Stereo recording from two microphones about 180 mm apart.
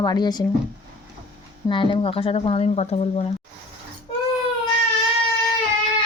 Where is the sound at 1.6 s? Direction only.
25° left (ahead or behind).